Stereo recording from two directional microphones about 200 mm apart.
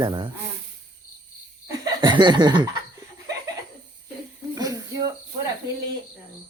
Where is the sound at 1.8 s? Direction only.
20° right (ahead or behind).